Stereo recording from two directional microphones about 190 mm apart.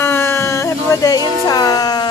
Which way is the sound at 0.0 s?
10° left (ahead or behind).